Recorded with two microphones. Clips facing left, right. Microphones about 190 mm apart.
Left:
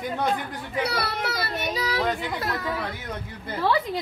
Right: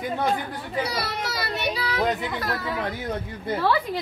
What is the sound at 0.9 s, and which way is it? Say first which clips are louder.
Child singing: left 1 dB; 60° left (ahead or behind).